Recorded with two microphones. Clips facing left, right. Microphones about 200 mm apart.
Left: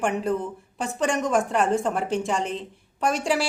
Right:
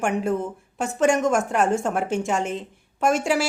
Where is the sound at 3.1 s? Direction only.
Centre (ahead or behind).